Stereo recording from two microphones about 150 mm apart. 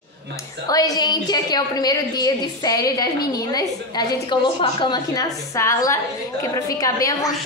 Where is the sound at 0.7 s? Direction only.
25° left (ahead or behind).